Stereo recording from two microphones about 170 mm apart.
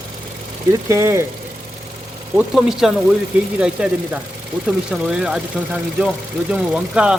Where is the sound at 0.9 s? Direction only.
15° right (ahead or behind).